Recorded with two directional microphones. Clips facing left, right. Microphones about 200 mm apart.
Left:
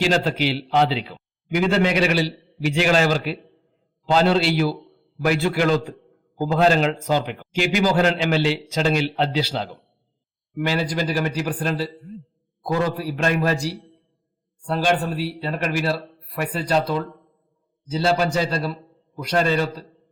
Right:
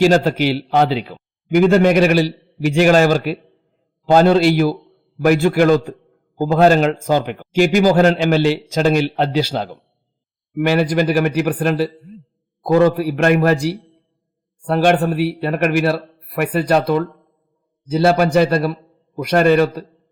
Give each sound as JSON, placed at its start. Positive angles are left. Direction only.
{"t": 0.0, "sound": "a man's voice", "side_deg": -45}
{"t": 10.5, "sound": "speech", "side_deg": -60}